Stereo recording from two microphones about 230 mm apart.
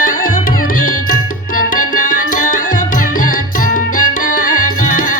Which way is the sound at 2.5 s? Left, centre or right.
Left.